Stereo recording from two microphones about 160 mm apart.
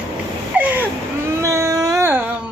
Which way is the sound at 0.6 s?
10° right (ahead or behind).